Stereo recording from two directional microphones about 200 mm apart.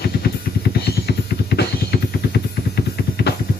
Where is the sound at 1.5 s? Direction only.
55° left (ahead or behind).